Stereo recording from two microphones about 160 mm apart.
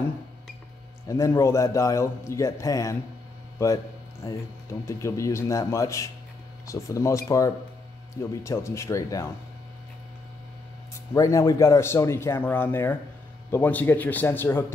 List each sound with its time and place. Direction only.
1.0 s a man's voice: 20° left (ahead or behind)
11.1 s a man's voice: 20° left (ahead or behind)